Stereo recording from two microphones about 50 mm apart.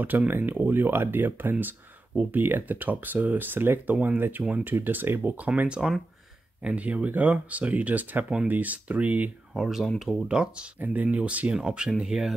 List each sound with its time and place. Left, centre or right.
0.0 s speech: right
5.7 s speech: centre
9.5 s speech: centre
10.2 s speech: centre
10.8 s speech: right
11.5 s speech: centre